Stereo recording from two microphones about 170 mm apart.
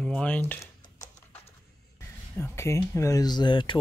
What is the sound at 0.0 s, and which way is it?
Speech, 5° left (ahead or behind).